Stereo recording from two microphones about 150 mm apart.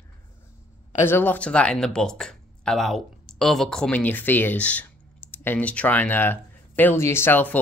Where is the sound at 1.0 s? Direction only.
15° left (ahead or behind).